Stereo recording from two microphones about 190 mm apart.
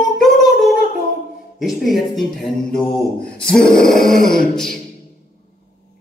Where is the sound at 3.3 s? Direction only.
5° left (ahead or behind).